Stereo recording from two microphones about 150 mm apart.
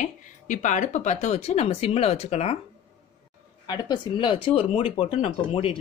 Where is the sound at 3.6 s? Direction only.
25° left (ahead or behind).